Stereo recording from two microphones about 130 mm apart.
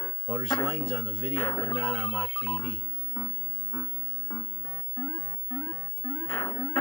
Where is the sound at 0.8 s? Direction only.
35° right (ahead or behind).